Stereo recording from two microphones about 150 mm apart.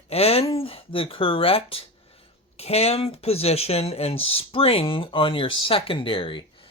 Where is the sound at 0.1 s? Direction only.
40° left (ahead or behind).